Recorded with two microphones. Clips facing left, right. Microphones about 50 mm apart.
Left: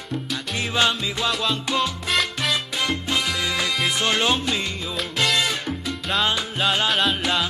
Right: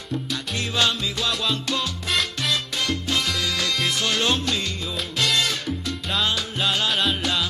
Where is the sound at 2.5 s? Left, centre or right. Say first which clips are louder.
Left 1 dB; centre.